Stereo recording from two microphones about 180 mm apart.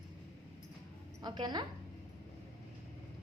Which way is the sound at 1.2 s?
25° right (ahead or behind).